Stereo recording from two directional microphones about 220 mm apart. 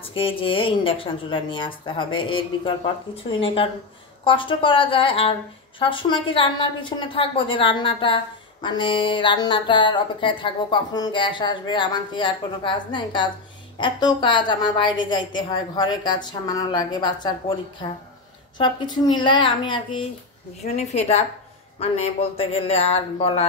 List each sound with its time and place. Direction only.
0.0 s a woman's voice: 25° left (ahead or behind)